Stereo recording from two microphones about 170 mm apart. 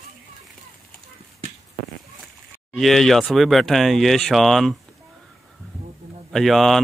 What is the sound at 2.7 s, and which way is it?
Speech, centre (ahead or behind).